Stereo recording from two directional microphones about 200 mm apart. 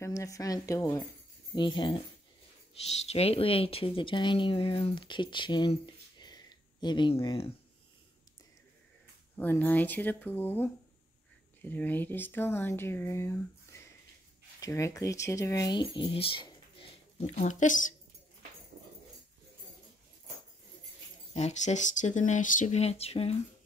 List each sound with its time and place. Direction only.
0.0 s speech: 15° left (ahead or behind)
3.1 s speech: 30° left (ahead or behind)
9.4 s speech: 10° left (ahead or behind); by 16.5 s 25° left (ahead or behind)
17.4 s speech: 40° left (ahead or behind)
21.3 s speech: 35° left (ahead or behind)